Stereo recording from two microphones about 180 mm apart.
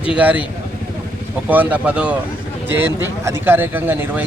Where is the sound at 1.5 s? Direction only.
10° right (ahead or behind).